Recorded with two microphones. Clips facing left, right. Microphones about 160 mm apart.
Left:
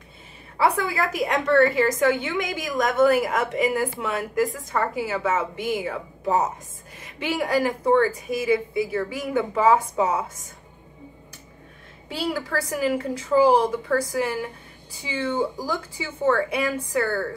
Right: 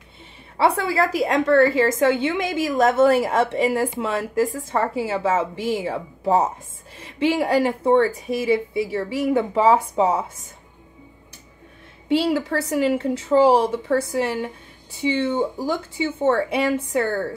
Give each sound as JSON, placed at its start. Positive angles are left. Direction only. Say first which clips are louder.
{"t": 0.6, "sound": "a woman's voice", "louder": "right 3 dB", "side_deg": -30}
{"t": 12.1, "sound": "a woman's voice", "louder": "right 7 dB", "side_deg": -25}